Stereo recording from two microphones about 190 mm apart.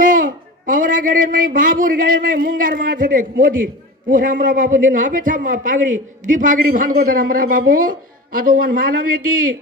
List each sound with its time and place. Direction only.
0.0 s a man's voice: 45° right (ahead or behind)